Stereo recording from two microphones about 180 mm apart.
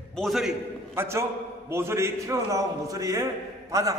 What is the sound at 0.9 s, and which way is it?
A man's voice, 15° right (ahead or behind).